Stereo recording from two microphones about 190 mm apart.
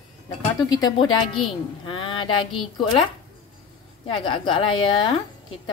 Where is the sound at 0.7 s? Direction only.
20° left (ahead or behind).